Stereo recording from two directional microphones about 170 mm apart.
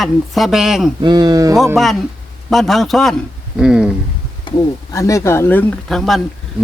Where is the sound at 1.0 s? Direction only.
25° right (ahead or behind).